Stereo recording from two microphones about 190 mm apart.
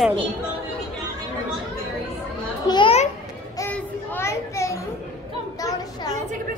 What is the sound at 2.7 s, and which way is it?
Speech, 30° left (ahead or behind).